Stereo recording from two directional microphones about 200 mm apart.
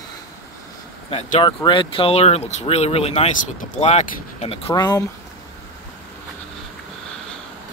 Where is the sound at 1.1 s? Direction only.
30° left (ahead or behind).